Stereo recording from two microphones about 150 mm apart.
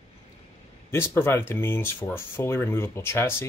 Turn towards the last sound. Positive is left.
turn(degrees=15)  # may be behind; listen again after turning